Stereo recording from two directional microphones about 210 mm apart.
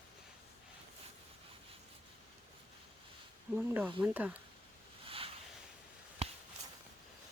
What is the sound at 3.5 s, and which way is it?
Speech, 10° right (ahead or behind).